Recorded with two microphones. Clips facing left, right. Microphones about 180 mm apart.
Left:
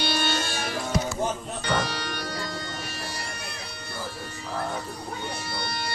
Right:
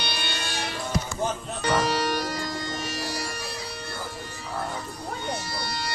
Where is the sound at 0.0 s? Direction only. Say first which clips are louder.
Left 6 dB; 45° left (ahead or behind).